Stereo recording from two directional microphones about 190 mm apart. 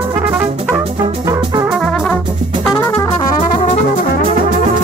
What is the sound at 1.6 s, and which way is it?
Brass instrument, centre (ahead or behind).